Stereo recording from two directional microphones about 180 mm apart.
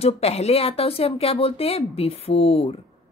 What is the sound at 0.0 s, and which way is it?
A woman's voice, 35° left (ahead or behind).